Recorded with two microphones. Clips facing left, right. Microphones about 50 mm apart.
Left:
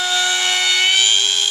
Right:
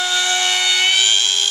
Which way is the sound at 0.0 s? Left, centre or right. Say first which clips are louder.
Even; centre.